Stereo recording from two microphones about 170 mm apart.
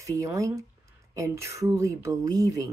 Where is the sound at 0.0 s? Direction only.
20° right (ahead or behind).